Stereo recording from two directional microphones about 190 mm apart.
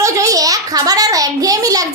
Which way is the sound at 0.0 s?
15° right (ahead or behind).